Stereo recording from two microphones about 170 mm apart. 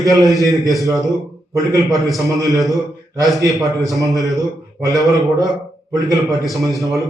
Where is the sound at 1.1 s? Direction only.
20° right (ahead or behind).